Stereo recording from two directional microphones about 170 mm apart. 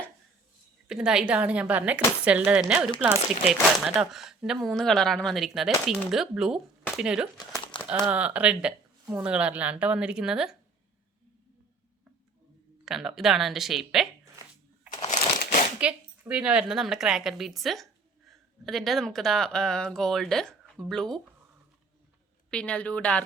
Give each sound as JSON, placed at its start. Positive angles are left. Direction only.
{"t": 0.9, "sound": "a woman's voice", "side_deg": -5}
{"t": 7.3, "sound": "crumpling", "side_deg": 25}
{"t": 8.1, "sound": "speech", "side_deg": -10}
{"t": 12.8, "sound": "a woman's voice", "side_deg": 0}
{"t": 14.8, "sound": "shuffling cards", "side_deg": 40}
{"t": 15.8, "sound": "a woman's voice", "side_deg": -5}
{"t": 22.4, "sound": "speech", "side_deg": 5}